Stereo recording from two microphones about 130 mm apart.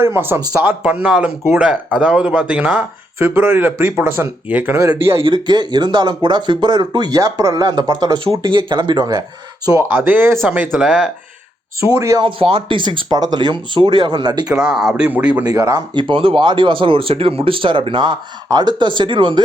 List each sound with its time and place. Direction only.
0.0 s speech: 15° right (ahead or behind)
4.8 s speech: 25° right (ahead or behind)
5.2 s speech: 35° right (ahead or behind)
9.6 s speech: 25° right (ahead or behind)
10.7 s speech: 5° right (ahead or behind)
11.9 s speech: 25° right (ahead or behind)
12.2 s speech: 45° right (ahead or behind)
14.4 s speech: 5° right (ahead or behind)
15.4 s speech: 25° right (ahead or behind)
16.0 s speech: 40° right (ahead or behind)